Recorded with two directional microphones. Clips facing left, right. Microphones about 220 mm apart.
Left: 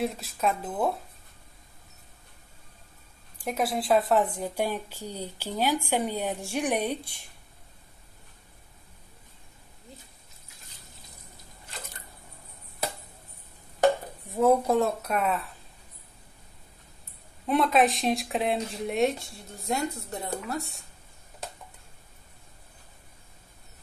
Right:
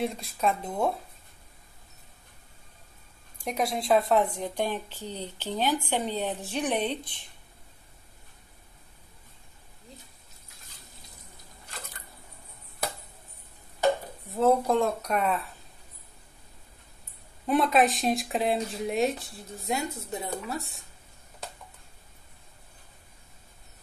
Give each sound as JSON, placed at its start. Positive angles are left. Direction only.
{"t": 0.0, "sound": "speech", "side_deg": 0}
{"t": 3.4, "sound": "a woman's voice", "side_deg": 0}
{"t": 14.3, "sound": "speech", "side_deg": 10}
{"t": 17.5, "sound": "speech", "side_deg": 0}